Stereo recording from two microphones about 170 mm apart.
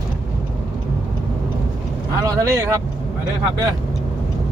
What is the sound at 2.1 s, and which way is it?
Speech, 20° right (ahead or behind).